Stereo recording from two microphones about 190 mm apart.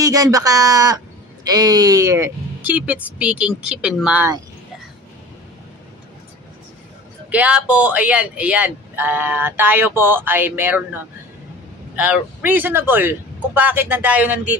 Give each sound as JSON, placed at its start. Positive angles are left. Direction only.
{"t": 0.0, "sound": "speech", "side_deg": -20}
{"t": 7.2, "sound": "speech", "side_deg": -5}
{"t": 12.0, "sound": "speech", "side_deg": -10}